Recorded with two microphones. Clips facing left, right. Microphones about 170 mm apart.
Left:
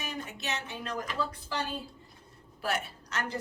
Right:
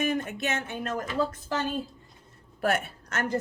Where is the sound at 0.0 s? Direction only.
55° right (ahead or behind).